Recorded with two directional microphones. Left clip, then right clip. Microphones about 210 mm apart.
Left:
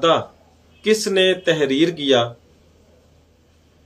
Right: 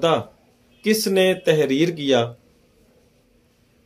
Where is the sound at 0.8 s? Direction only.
40° right (ahead or behind).